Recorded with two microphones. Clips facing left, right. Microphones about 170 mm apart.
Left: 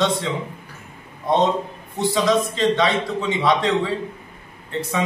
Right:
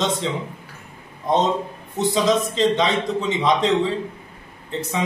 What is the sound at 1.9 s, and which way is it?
A man's voice, 20° right (ahead or behind).